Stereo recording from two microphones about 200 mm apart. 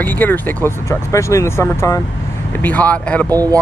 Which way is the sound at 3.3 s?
20° right (ahead or behind).